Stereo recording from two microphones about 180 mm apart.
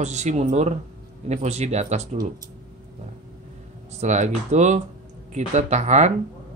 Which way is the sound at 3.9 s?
40° right (ahead or behind).